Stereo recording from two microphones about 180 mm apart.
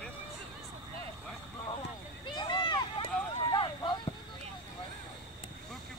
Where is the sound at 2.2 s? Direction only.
25° left (ahead or behind).